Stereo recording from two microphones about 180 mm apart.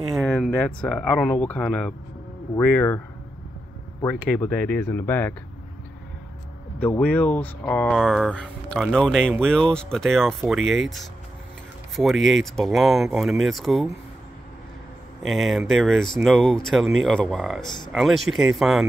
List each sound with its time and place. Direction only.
0.1 s speech: 5° left (ahead or behind)
4.0 s speech: 10° left (ahead or behind)
6.8 s speech: 10° left (ahead or behind)
11.9 s speech: centre (ahead or behind)
15.2 s speech: centre (ahead or behind)